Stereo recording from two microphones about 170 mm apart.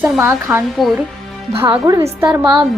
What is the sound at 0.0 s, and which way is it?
Speech, 15° right (ahead or behind).